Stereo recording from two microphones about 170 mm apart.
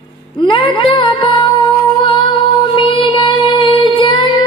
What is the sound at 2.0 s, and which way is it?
Child singing, 30° left (ahead or behind).